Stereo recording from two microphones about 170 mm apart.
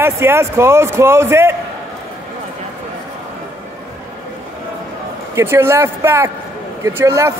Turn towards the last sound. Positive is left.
turn(degrees=-15)  # may be behind; listen again after turning